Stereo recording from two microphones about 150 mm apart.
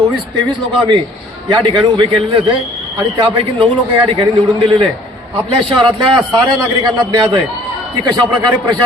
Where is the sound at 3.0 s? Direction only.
35° right (ahead or behind).